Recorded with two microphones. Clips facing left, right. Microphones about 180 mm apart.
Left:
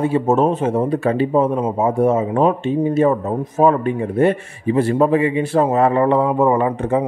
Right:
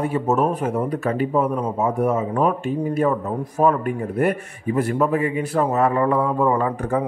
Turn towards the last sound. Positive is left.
turn(degrees=20)  # may be behind; listen again after turning